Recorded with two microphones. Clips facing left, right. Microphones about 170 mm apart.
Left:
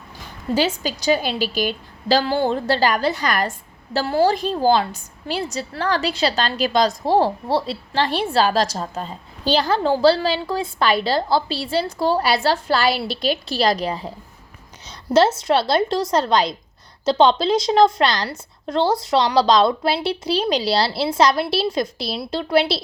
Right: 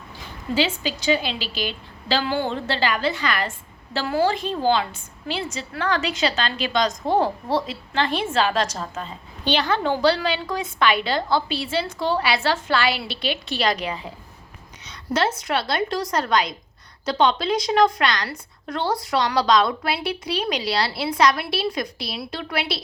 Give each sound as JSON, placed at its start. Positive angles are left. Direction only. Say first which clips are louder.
{"t": 0.5, "sound": "a woman's voice", "louder": "left 2 dB", "side_deg": 40}
{"t": 15.4, "sound": "a woman's voice", "louder": "left 6 dB", "side_deg": 30}